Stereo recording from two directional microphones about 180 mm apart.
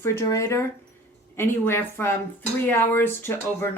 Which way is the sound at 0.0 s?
15° left (ahead or behind).